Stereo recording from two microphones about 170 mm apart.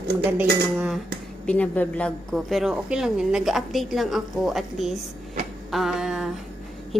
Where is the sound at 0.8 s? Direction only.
5° right (ahead or behind).